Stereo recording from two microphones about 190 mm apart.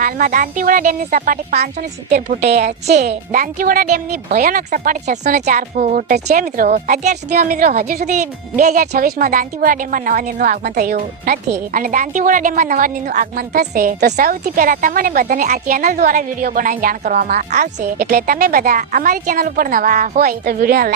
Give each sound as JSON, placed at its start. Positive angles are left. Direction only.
{"t": 0.0, "sound": "a woman's voice", "side_deg": -45}
{"t": 2.0, "sound": "a woman's voice", "side_deg": -40}